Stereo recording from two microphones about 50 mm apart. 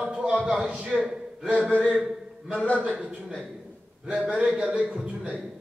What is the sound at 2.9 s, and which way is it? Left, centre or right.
Speech, right.